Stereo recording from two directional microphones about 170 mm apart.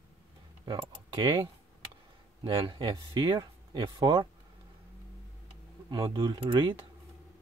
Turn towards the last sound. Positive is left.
turn(degrees=-25)  # may be behind; listen again after turning